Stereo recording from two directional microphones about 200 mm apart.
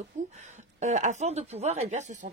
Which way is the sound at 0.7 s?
35° right (ahead or behind).